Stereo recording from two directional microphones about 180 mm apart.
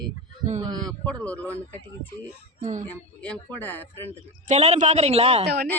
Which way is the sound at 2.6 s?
45° right (ahead or behind).